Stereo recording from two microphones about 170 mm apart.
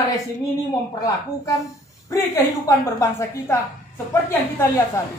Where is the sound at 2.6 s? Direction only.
20° left (ahead or behind).